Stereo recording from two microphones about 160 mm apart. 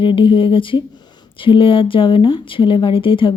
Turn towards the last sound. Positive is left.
turn(degrees=30)  # may be behind; listen again after turning